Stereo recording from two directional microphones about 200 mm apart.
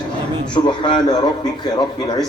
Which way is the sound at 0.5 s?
20° left (ahead or behind).